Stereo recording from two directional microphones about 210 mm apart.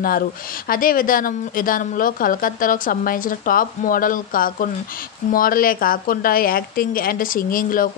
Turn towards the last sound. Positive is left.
turn(degrees=40)  # may be behind; listen again after turning